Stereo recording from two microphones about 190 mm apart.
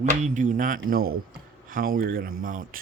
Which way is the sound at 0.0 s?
40° right (ahead or behind).